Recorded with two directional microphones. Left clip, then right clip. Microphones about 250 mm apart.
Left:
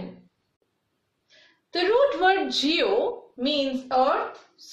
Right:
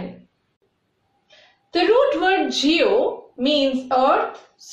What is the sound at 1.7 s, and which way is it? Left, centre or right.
A woman's voice, centre.